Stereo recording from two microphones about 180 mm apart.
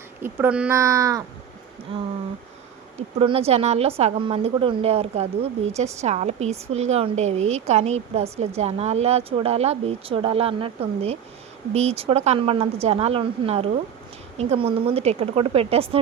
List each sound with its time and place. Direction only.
0.2 s speech: 10° right (ahead or behind)
0.8 s speech: 20° right (ahead or behind)
3.2 s a woman's voice: 35° right (ahead or behind)